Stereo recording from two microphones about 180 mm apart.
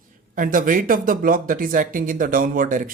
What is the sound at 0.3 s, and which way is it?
Speech, 50° right (ahead or behind).